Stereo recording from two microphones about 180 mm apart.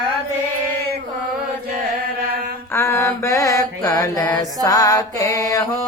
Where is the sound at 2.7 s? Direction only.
15° left (ahead or behind).